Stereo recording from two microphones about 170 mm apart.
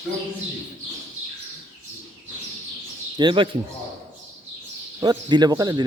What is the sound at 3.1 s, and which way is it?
Speech, 30° right (ahead or behind).